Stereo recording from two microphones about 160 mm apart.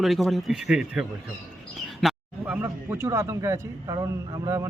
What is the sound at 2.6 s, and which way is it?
A man's voice, 15° right (ahead or behind).